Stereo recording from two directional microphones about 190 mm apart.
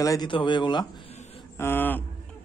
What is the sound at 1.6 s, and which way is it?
Speech, 10° left (ahead or behind).